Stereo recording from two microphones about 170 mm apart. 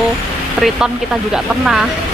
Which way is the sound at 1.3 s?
5° right (ahead or behind).